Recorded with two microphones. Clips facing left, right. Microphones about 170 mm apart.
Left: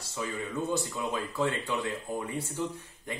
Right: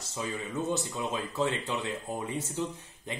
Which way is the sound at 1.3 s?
20° right (ahead or behind).